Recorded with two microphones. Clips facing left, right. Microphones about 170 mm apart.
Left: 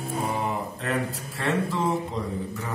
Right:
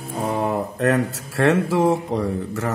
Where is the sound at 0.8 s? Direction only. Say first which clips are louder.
Right 9 dB; 75° right (ahead or behind).